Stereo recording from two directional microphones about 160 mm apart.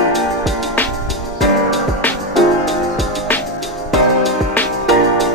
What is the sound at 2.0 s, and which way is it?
Music, 10° left (ahead or behind).